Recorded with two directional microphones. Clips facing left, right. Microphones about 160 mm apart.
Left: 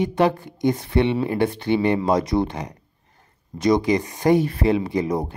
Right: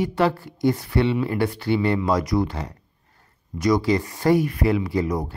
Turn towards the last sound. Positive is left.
turn(degrees=25)  # may be behind; listen again after turning